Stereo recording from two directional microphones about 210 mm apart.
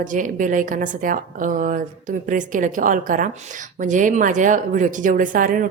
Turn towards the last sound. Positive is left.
turn(degrees=-40)  # may be behind; listen again after turning